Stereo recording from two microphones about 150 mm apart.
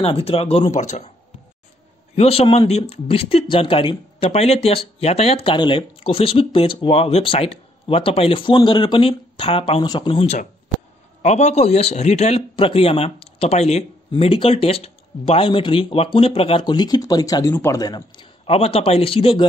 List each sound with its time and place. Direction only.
0.0 s speech: 40° left (ahead or behind)
2.1 s speech: 40° left (ahead or behind)
4.3 s speech: 45° left (ahead or behind)